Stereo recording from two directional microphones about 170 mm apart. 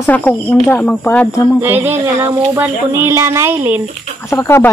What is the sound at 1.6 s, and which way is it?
Speech, 10° right (ahead or behind).